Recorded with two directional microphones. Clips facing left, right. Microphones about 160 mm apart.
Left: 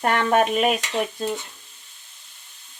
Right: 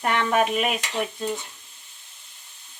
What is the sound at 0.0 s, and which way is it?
Speech, 40° left (ahead or behind).